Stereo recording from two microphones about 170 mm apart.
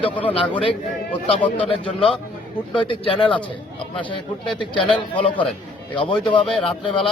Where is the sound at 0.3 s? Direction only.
30° left (ahead or behind).